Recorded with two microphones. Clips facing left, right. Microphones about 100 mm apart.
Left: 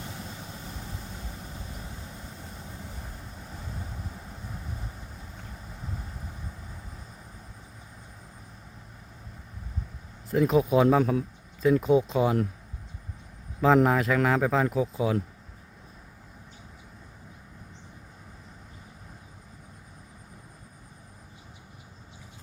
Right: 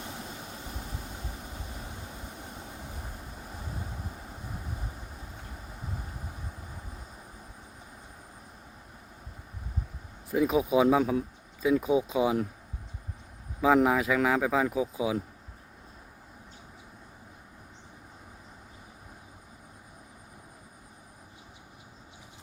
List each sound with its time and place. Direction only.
0.0 s vehicle: 10° right (ahead or behind)
10.3 s a man's voice: 5° right (ahead or behind)
13.6 s a man's voice: 5° right (ahead or behind)